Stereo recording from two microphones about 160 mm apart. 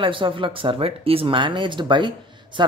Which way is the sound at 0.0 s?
30° right (ahead or behind).